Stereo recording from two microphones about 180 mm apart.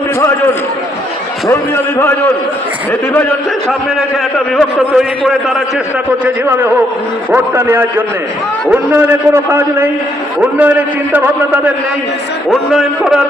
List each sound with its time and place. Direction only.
1.5 s a man's voice: 15° left (ahead or behind); by 5.6 s centre (ahead or behind)
6.2 s a man's voice: 10° right (ahead or behind)